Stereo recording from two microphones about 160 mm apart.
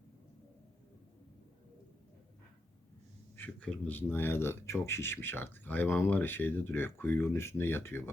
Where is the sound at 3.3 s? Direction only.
10° left (ahead or behind).